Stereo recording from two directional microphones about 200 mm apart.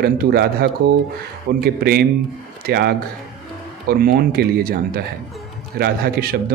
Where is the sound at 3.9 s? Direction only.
45° right (ahead or behind).